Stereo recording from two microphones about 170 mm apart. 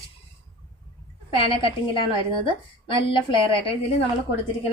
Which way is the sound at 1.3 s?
30° left (ahead or behind).